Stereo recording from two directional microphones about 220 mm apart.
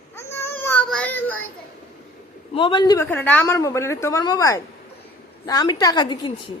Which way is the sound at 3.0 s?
5° left (ahead or behind).